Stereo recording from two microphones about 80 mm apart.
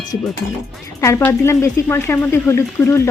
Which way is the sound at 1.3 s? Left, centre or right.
Left.